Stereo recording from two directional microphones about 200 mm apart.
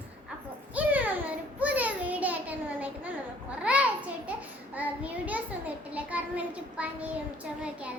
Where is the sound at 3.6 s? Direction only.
5° right (ahead or behind).